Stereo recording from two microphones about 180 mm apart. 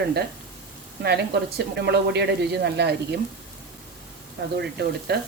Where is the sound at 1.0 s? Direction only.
65° right (ahead or behind).